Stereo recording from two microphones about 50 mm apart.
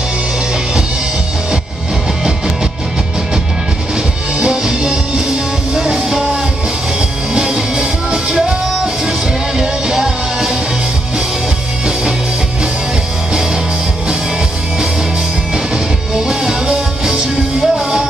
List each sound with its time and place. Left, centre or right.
4.4 s music: centre
15.5 s music: centre